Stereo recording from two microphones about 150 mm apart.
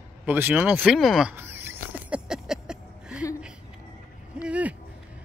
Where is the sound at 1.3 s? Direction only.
15° right (ahead or behind).